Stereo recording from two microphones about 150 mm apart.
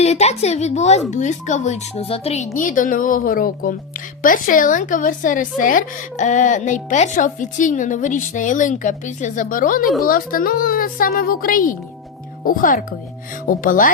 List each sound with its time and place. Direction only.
0.0 s speech: 45° left (ahead or behind)
2.6 s a woman's voice: 60° left (ahead or behind)